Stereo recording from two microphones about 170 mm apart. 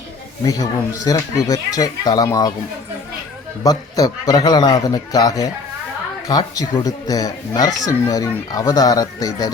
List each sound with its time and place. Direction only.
0.4 s speech: 20° left (ahead or behind)
3.6 s speech: 20° left (ahead or behind)